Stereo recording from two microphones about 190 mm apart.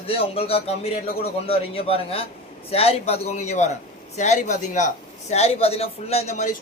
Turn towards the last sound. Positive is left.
turn(degrees=40)  # may be behind; listen again after turning